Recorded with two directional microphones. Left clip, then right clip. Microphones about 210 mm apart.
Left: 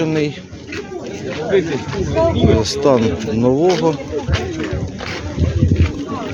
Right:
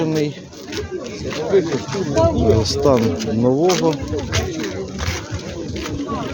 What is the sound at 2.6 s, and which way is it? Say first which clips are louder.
Speech: left 2 dB; centre (ahead or behind).